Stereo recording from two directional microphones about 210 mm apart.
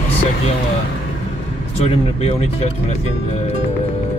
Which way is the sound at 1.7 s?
30° left (ahead or behind).